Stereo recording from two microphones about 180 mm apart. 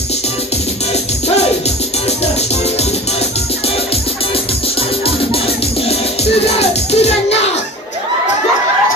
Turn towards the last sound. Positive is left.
turn(degrees=35)  # may be behind; listen again after turning